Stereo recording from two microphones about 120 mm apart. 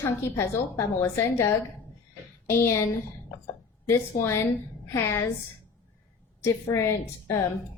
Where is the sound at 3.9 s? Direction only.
20° left (ahead or behind).